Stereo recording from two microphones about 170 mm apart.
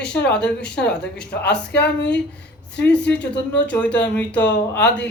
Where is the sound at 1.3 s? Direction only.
70° left (ahead or behind).